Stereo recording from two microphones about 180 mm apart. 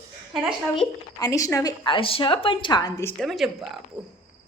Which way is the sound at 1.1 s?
20° left (ahead or behind).